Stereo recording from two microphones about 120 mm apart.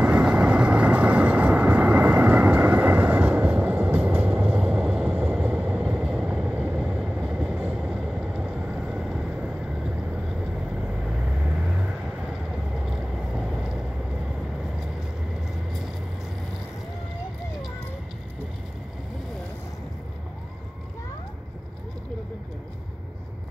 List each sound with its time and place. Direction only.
0.0 s vehicle: 10° right (ahead or behind)
13.4 s vehicle: 5° right (ahead or behind)